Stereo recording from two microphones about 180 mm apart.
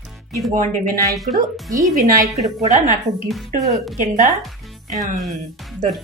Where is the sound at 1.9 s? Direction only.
45° right (ahead or behind).